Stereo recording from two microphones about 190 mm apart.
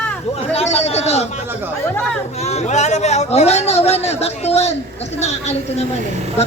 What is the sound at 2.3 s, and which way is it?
A man's voice, 35° left (ahead or behind).